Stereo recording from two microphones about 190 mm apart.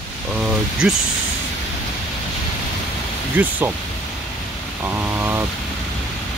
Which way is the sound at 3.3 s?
10° right (ahead or behind).